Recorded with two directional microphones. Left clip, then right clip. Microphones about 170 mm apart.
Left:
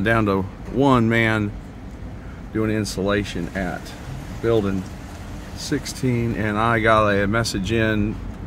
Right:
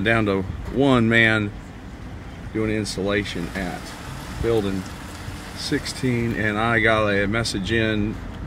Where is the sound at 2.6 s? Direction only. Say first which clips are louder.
Left 1 dB; 20° left (ahead or behind).